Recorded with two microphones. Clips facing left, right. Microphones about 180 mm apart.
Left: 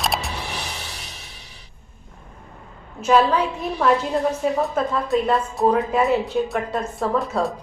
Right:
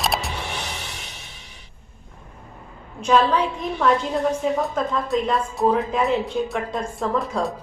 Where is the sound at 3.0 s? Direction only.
5° left (ahead or behind).